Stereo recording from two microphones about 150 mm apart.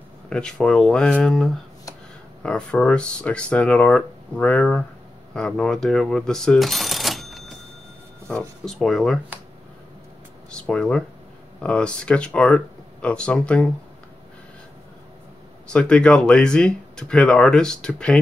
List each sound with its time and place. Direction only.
0.3 s speech: 5° left (ahead or behind)
10.5 s speech: 5° left (ahead or behind)
15.7 s speech: 5° left (ahead or behind)